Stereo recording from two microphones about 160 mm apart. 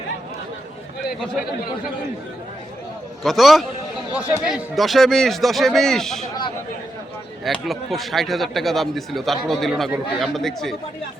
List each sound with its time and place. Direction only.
3.2 s speech: centre (ahead or behind)
7.4 s speech: centre (ahead or behind)